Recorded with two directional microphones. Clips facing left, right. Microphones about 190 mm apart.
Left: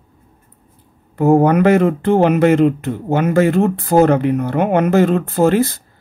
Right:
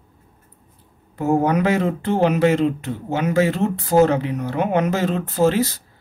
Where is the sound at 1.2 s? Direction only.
55° left (ahead or behind).